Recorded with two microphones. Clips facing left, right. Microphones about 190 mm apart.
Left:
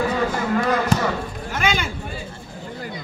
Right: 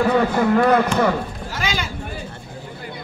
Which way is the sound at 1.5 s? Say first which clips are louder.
Left 3 dB; 55° left (ahead or behind).